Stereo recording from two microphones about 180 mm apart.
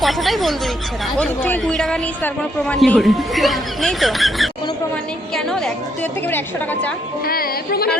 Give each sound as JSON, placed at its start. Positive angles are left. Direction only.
{"t": 0.0, "sound": "a woman's voice", "side_deg": 0}
{"t": 7.3, "sound": "music", "side_deg": 55}